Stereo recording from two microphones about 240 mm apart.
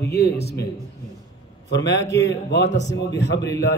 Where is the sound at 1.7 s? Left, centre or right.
Left.